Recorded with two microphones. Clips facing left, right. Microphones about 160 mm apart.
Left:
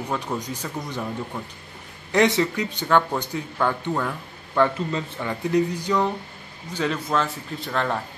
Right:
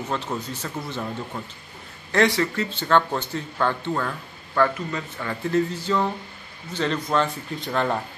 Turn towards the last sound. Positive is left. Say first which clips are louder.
# right 1 dB
turn(degrees=-5)  # may be behind; listen again after turning